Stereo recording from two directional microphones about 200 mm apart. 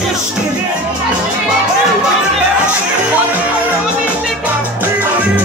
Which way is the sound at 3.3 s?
5° right (ahead or behind).